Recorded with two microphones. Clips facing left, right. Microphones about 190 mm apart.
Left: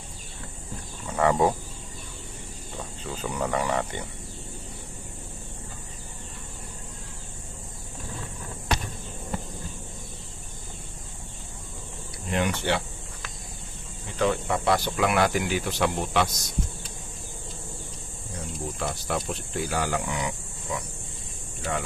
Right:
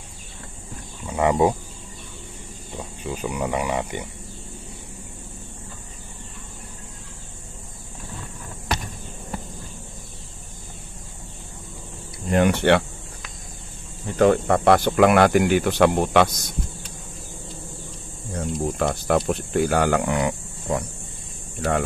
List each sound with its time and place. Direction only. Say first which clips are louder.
1.0 s speech: right 3 dB; 15° right (ahead or behind)
2.8 s speech: right 5 dB; 15° right (ahead or behind)
12.3 s speech: right 9 dB; 55° right (ahead or behind)
14.1 s speech: right 8 dB; 50° right (ahead or behind)
18.3 s speech: right 9 dB; 55° right (ahead or behind)